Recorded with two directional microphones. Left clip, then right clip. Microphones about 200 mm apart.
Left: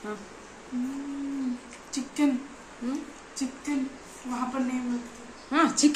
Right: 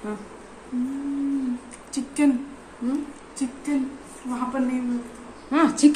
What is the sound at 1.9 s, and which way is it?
Speech, 20° right (ahead or behind).